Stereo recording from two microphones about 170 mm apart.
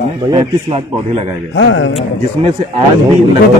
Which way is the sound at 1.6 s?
90° left.